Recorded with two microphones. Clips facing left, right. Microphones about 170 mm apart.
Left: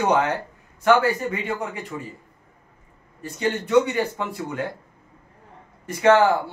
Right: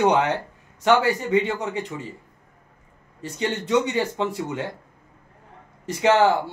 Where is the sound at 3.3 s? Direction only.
20° right (ahead or behind).